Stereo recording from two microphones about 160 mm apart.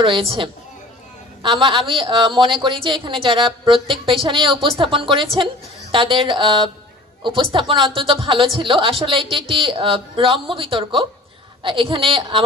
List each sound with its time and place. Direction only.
0.0 s a woman's voice: 35° right (ahead or behind)